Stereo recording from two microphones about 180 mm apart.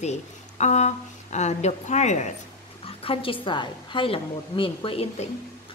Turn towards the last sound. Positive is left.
turn(degrees=30)  # may be behind; listen again after turning